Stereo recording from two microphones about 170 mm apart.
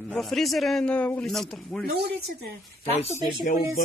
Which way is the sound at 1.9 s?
70° right (ahead or behind).